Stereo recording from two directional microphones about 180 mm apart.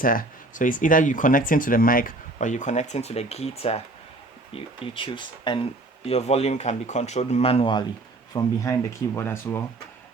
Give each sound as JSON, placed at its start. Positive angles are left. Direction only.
{"t": 0.0, "sound": "speech", "side_deg": 50}